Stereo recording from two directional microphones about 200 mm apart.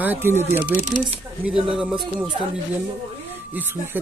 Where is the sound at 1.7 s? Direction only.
5° right (ahead or behind).